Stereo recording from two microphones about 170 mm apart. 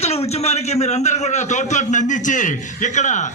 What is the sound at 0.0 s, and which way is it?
A man's voice, 40° left (ahead or behind).